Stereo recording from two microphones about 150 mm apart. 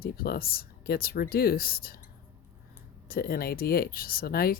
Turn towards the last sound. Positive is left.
turn(degrees=90)